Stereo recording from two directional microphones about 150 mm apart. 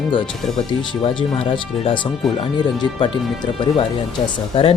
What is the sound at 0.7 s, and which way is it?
Speech, 30° left (ahead or behind).